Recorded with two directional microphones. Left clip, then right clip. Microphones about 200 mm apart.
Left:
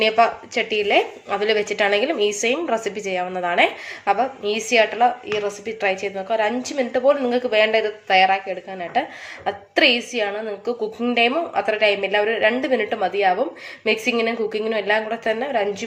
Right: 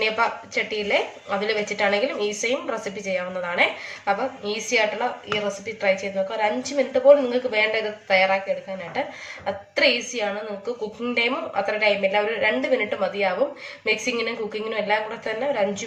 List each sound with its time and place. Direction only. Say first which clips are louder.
0.0 s a woman's voice: left 5 dB; 50° left (ahead or behind)
9.5 s a woman's voice: left 3 dB; 50° left (ahead or behind)